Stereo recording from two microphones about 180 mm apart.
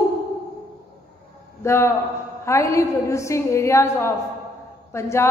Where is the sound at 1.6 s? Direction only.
15° left (ahead or behind).